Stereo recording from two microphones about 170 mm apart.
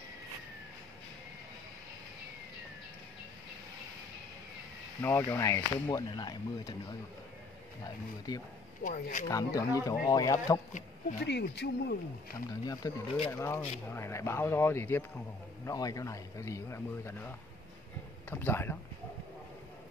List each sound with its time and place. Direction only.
5.0 s speech: 15° left (ahead or behind)
8.8 s speech: 50° left (ahead or behind)
9.3 s speech: 20° left (ahead or behind)
11.2 s speech: 85° left
12.4 s speech: 20° left (ahead or behind)
18.3 s speech: 15° left (ahead or behind)